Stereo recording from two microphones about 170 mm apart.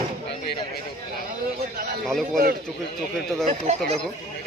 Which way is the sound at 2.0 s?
Centre (ahead or behind).